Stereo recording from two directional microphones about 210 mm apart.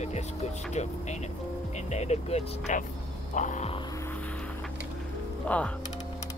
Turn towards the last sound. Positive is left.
turn(degrees=5)  # may be behind; listen again after turning